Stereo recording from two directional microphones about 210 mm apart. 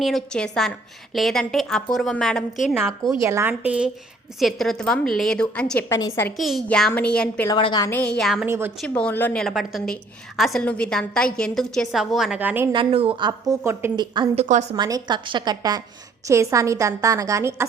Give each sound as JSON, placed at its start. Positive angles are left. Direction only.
{"t": 0.0, "sound": "a woman's voice", "side_deg": 0}
{"t": 3.2, "sound": "a woman's voice", "side_deg": -15}
{"t": 7.4, "sound": "a woman's voice", "side_deg": 20}
{"t": 8.4, "sound": "a woman's voice", "side_deg": -10}
{"t": 8.8, "sound": "a woman's voice", "side_deg": 5}
{"t": 12.7, "sound": "a woman's voice", "side_deg": -25}
{"t": 14.4, "sound": "a woman's voice", "side_deg": -35}
{"t": 14.8, "sound": "a woman's voice", "side_deg": -20}